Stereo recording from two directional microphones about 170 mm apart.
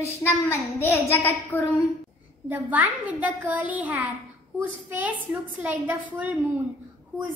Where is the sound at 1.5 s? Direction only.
15° left (ahead or behind).